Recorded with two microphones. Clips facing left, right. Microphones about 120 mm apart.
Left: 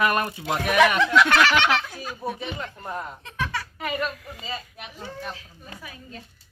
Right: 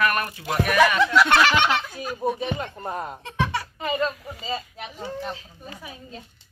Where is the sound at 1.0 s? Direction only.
10° right (ahead or behind).